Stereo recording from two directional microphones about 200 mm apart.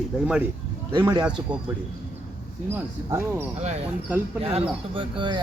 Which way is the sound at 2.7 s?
10° right (ahead or behind).